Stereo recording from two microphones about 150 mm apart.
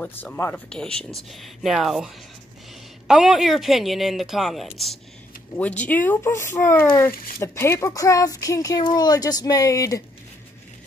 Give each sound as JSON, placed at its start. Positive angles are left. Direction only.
{"t": 0.0, "sound": "speech", "side_deg": 10}